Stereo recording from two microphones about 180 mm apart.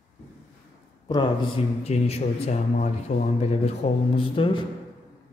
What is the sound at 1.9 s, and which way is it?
A man's voice, 40° left (ahead or behind).